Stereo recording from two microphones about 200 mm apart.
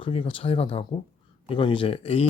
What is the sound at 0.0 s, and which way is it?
Speech, 25° left (ahead or behind).